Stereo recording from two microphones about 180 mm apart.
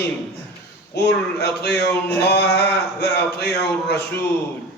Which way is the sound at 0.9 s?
70° left (ahead or behind).